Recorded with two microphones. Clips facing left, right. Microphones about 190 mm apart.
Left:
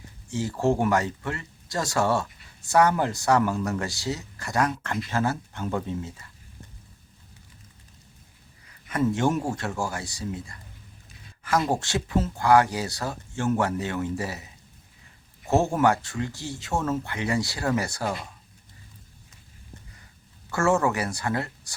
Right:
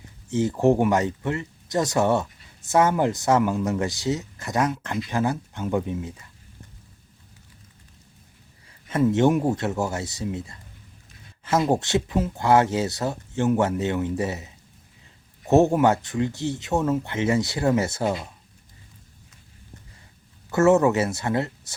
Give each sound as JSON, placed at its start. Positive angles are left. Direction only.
{"t": 0.3, "sound": "speech", "side_deg": -20}
{"t": 8.9, "sound": "a man's voice", "side_deg": -25}
{"t": 20.5, "sound": "speech", "side_deg": -20}